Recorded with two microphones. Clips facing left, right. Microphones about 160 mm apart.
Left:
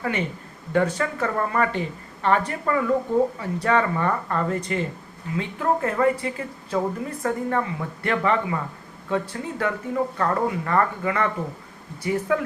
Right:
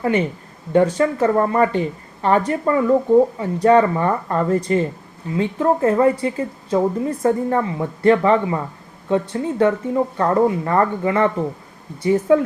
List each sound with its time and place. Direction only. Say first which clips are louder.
0.0 s speech: right 7 dB; 35° right (ahead or behind)